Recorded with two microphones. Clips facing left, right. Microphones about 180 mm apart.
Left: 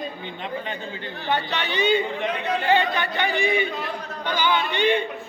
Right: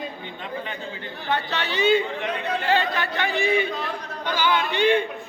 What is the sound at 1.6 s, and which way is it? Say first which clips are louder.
A man's voice: right 3 dB; centre (ahead or behind).